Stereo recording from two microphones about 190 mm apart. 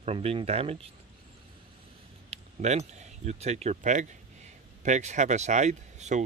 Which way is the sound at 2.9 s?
35° right (ahead or behind).